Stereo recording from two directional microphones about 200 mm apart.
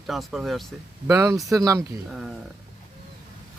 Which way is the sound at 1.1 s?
15° right (ahead or behind).